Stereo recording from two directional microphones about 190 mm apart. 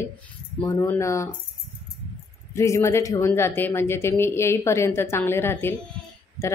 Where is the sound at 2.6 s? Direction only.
15° left (ahead or behind).